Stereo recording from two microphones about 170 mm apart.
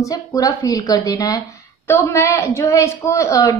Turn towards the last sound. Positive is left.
turn(degrees=20)  # may be behind; listen again after turning